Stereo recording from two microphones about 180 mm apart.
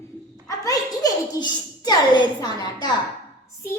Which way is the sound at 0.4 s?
20° left (ahead or behind).